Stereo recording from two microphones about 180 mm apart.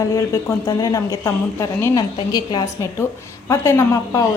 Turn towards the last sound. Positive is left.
turn(degrees=15)  # may be behind; listen again after turning